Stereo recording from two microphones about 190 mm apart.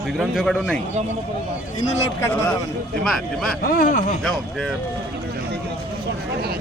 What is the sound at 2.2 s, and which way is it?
Speech, 10° left (ahead or behind).